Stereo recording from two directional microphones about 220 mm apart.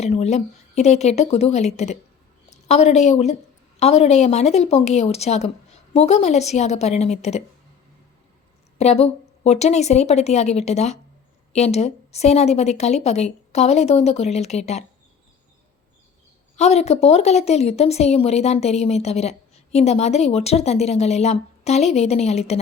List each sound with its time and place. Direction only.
0.0 s a woman's voice: 30° left (ahead or behind)
8.8 s speech: 30° left (ahead or behind)
16.6 s speech: 30° left (ahead or behind)